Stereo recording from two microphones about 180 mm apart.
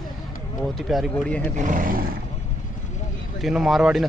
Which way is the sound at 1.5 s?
45° right (ahead or behind).